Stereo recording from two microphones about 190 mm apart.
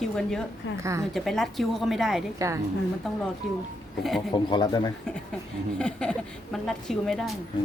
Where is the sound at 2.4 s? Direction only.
15° right (ahead or behind).